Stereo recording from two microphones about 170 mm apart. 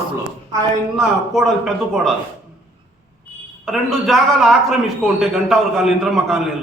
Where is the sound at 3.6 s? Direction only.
Centre (ahead or behind).